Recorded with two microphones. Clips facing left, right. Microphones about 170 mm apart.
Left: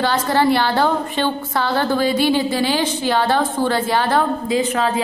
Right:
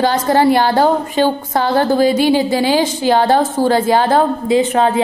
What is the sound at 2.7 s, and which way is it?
A woman's voice, 45° right (ahead or behind).